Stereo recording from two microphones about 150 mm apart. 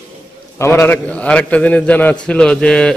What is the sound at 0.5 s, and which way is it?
A man's voice, 15° left (ahead or behind).